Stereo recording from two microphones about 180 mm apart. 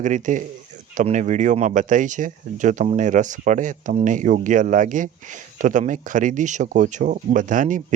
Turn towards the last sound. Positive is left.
turn(degrees=-45)  # may be behind; listen again after turning